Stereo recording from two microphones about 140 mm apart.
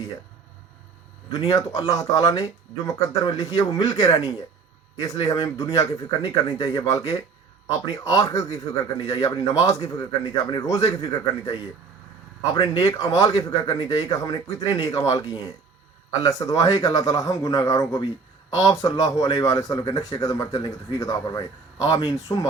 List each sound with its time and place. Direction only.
1.5 s a man's voice: 25° left (ahead or behind)
8.0 s a man's voice: 25° left (ahead or behind)